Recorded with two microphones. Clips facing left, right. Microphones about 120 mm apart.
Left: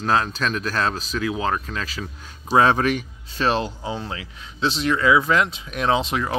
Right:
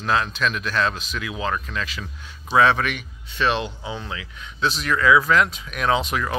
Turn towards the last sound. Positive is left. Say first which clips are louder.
# left 1 dB
turn(degrees=25)  # may be behind; listen again after turning